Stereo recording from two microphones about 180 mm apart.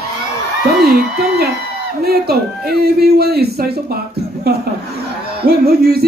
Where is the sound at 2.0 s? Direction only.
60° right (ahead or behind).